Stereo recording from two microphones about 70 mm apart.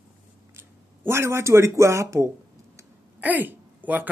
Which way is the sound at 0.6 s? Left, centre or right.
Right.